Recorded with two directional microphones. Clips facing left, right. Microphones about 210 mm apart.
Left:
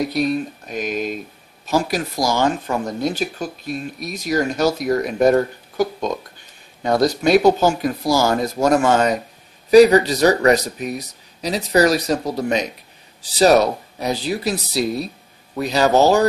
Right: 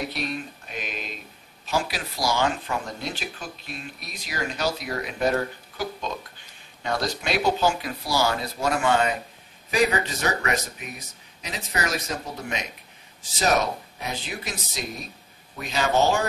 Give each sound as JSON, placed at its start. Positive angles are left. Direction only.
{"t": 0.0, "sound": "speech", "side_deg": 40}